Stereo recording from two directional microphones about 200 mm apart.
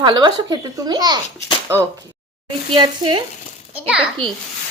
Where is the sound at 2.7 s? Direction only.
25° right (ahead or behind).